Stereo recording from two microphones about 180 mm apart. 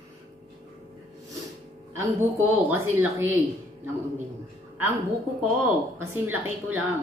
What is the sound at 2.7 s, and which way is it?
Speech, 15° right (ahead or behind).